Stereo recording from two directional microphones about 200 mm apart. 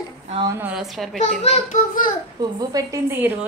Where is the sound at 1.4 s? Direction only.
35° left (ahead or behind).